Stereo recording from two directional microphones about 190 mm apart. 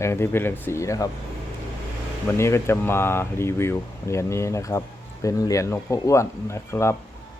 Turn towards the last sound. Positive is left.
turn(degrees=15)  # may be behind; listen again after turning